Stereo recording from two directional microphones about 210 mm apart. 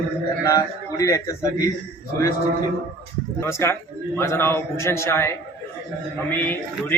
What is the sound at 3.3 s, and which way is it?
A man's voice, 10° left (ahead or behind).